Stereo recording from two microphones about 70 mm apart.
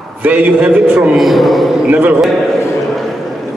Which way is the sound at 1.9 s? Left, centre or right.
Right.